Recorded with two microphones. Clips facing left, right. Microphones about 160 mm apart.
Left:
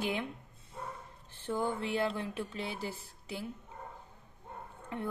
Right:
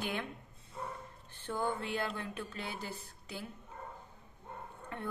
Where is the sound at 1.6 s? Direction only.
25° left (ahead or behind).